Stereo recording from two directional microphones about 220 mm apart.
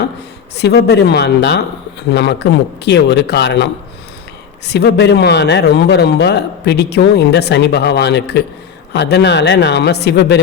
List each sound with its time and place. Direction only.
0.5 s speech: 50° left (ahead or behind)